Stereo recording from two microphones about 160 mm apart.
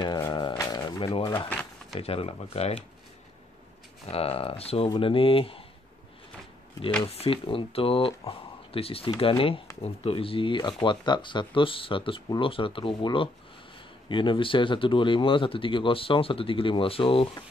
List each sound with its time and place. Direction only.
0.3 s a sound: 30° left (ahead or behind)
2.0 s speech: 40° left (ahead or behind)
4.0 s speech: 40° left (ahead or behind)
7.1 s speech: 35° left (ahead or behind)